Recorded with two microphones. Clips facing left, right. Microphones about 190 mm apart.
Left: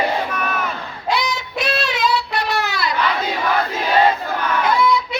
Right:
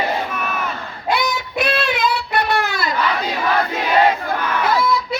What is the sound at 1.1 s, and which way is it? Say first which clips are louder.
Child singing: right 2 dB; 55° right (ahead or behind).